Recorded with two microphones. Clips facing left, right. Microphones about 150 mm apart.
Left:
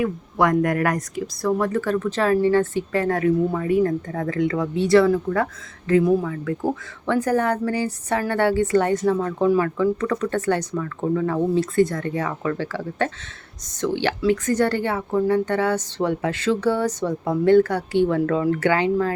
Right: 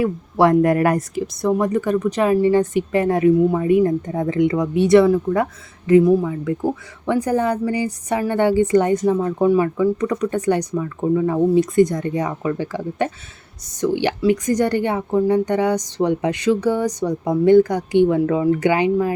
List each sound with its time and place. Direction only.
0.0 s a woman's voice: 30° right (ahead or behind); by 19.1 s 15° right (ahead or behind)